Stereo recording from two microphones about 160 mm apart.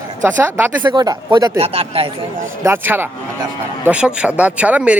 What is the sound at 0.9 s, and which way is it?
Speech, 25° right (ahead or behind).